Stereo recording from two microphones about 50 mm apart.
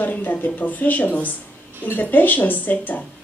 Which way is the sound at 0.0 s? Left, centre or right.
Left.